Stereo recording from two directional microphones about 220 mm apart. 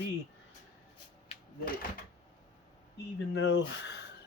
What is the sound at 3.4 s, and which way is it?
Speech, 55° left (ahead or behind).